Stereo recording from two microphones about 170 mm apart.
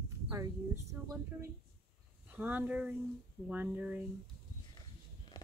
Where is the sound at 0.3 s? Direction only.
20° right (ahead or behind).